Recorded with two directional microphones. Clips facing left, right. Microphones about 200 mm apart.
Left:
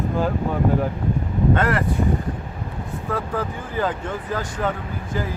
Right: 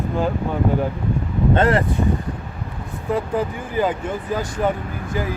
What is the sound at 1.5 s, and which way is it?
Speech, 25° right (ahead or behind).